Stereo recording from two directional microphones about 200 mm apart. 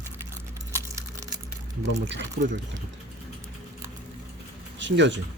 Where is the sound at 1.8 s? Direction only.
65° right (ahead or behind).